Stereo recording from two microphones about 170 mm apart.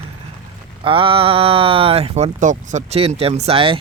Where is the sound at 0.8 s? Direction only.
30° right (ahead or behind).